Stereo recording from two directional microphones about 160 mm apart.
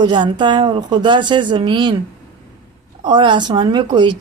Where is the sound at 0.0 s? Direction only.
30° right (ahead or behind).